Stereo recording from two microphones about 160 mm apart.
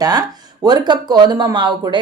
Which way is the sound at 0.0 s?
25° right (ahead or behind).